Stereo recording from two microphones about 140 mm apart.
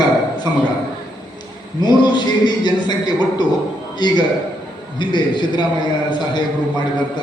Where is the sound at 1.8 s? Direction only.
30° left (ahead or behind).